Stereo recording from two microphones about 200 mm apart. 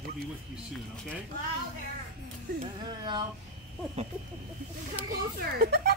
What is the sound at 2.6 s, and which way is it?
Speech, 20° right (ahead or behind).